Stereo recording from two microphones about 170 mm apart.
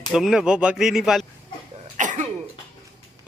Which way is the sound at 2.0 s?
50° right (ahead or behind).